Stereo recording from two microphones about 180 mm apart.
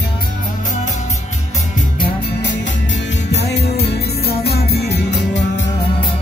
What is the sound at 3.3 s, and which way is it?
Music, 65° left (ahead or behind).